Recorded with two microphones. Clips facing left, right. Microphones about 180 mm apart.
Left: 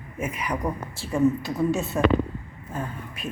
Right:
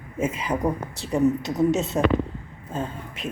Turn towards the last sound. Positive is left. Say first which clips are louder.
# right 2 dB
turn(degrees=-20)  # may be behind; listen again after turning